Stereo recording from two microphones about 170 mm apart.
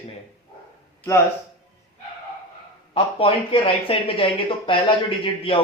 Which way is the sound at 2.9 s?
30° left (ahead or behind).